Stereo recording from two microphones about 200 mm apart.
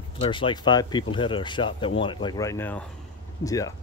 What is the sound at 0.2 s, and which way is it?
Speech, 25° left (ahead or behind).